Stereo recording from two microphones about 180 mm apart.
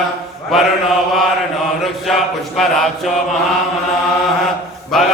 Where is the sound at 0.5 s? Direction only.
Centre (ahead or behind).